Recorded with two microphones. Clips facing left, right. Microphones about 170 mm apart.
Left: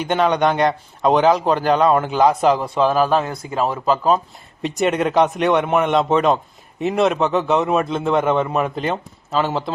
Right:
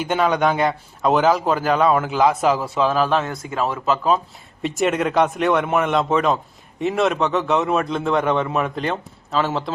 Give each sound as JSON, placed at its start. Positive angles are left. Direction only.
{"t": 0.0, "sound": "a man's voice", "side_deg": -5}
{"t": 3.5, "sound": "speech", "side_deg": 35}
{"t": 4.6, "sound": "a man's voice", "side_deg": 0}